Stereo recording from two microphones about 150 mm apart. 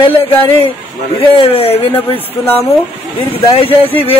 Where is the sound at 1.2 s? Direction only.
40° left (ahead or behind).